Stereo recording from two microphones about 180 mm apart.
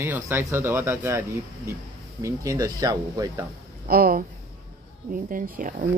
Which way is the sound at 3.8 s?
55° right (ahead or behind).